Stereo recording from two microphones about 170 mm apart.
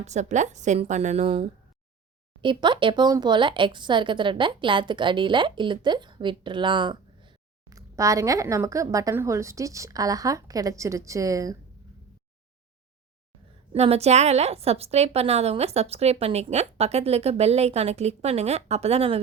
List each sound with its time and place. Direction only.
0.0 s a woman's voice: 45° right (ahead or behind)
2.4 s speech: 30° right (ahead or behind)
13.7 s a woman's voice: 40° right (ahead or behind)